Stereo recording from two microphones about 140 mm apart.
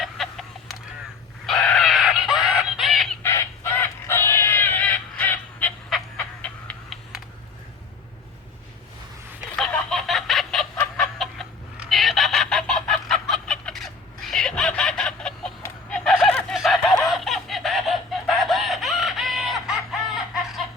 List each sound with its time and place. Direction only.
0.0 s chicken: centre (ahead or behind)
1.5 s fowl: 5° left (ahead or behind)
3.2 s crow: 20° left (ahead or behind)
5.9 s frog: 5° left (ahead or behind)
9.6 s a sound: 5° left (ahead or behind)
10.8 s chicken: 20° left (ahead or behind)
11.8 s fowl: centre (ahead or behind)
16.0 s a sound: centre (ahead or behind)
16.5 s fowl: centre (ahead or behind)
17.0 s chicken: centre (ahead or behind)